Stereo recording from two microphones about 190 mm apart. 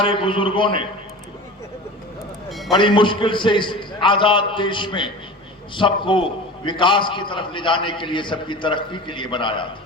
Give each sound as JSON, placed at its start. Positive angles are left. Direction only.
{"t": 0.0, "sound": "a man's voice", "side_deg": 25}
{"t": 2.5, "sound": "a sound", "side_deg": 0}
{"t": 2.7, "sound": "a man's voice", "side_deg": 25}